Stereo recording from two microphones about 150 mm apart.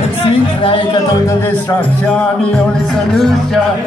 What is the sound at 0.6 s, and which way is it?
Speech, 35° left (ahead or behind).